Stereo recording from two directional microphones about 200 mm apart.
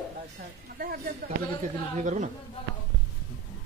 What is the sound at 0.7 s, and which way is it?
A woman's voice, 45° right (ahead or behind).